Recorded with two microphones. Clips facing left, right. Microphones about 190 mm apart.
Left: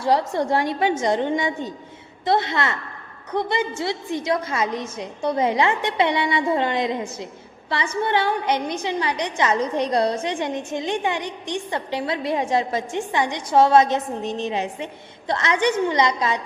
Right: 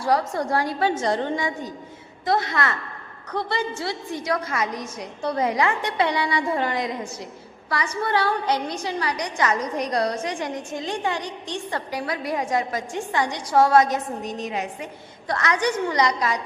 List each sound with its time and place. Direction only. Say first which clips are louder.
0.0 s a woman's voice: left 2 dB; 25° left (ahead or behind)